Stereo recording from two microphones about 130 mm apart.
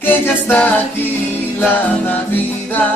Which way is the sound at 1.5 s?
15° left (ahead or behind).